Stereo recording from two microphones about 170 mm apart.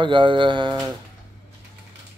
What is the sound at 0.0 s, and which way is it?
Speech, 30° right (ahead or behind).